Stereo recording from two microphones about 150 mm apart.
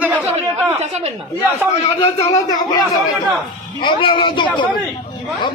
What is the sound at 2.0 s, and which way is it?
Speech, 45° left (ahead or behind).